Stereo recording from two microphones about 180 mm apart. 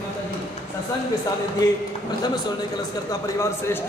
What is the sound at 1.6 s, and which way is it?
Speech, 20° left (ahead or behind).